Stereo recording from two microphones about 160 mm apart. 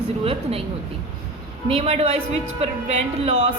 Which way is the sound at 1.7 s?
40° right (ahead or behind).